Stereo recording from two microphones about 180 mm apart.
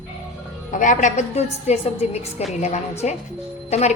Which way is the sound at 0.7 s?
45° left (ahead or behind).